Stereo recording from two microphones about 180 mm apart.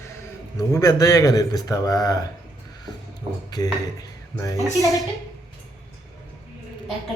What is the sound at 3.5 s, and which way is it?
A man's voice, 20° left (ahead or behind).